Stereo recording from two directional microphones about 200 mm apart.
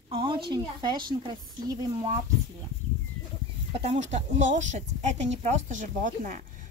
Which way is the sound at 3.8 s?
35° right (ahead or behind).